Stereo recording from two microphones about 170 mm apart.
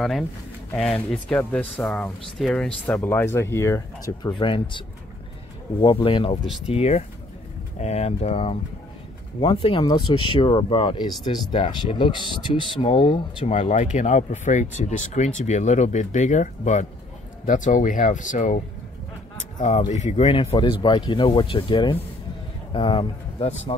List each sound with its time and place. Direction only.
0.7 s speech: 5° left (ahead or behind)
4.4 s speech: 30° left (ahead or behind)
13.6 s speech: 45° left (ahead or behind)
19.9 s speech: 40° left (ahead or behind)
20.8 s speech: 25° left (ahead or behind)